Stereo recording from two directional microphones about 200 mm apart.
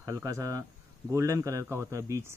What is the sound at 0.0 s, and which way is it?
Speech, 15° right (ahead or behind).